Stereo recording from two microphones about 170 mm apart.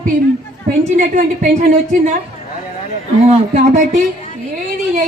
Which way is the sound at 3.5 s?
40° right (ahead or behind).